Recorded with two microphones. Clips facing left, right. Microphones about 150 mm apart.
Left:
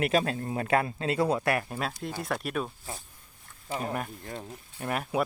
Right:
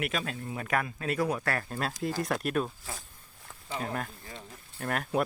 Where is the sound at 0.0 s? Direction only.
35° left (ahead or behind).